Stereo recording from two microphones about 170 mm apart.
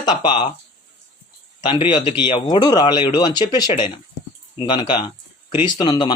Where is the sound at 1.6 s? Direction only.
30° left (ahead or behind).